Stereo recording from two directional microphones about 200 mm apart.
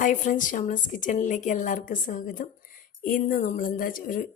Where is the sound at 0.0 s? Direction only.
40° left (ahead or behind).